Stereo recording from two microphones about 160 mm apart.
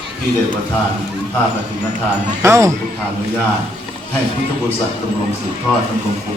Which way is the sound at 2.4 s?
15° right (ahead or behind).